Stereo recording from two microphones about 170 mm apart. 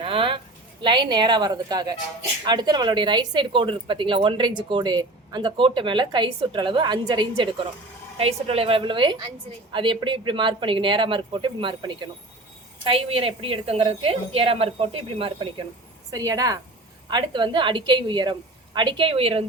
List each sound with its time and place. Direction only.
0.0 s a woman's voice: 30° right (ahead or behind)
16.1 s speech: 20° right (ahead or behind)